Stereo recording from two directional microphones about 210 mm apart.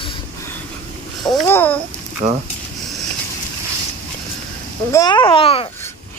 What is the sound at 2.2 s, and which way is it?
Speech, 30° right (ahead or behind).